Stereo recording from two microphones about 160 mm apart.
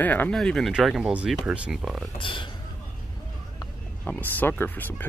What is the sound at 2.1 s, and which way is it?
Speech, 30° left (ahead or behind).